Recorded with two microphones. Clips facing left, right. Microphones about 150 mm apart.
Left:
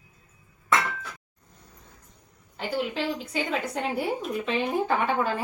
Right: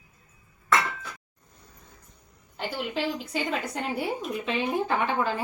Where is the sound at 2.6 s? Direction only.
Centre (ahead or behind).